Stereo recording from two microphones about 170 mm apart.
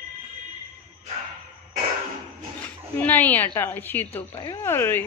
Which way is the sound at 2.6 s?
10° left (ahead or behind).